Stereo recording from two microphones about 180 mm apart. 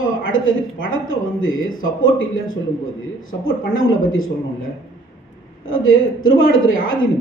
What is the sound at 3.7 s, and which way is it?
Speech, 90° left.